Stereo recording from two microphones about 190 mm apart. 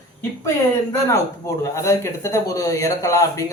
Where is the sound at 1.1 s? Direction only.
15° left (ahead or behind).